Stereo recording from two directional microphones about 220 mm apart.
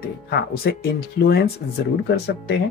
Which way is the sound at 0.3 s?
45° left (ahead or behind).